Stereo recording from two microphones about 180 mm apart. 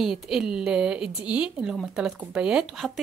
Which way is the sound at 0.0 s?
5° right (ahead or behind).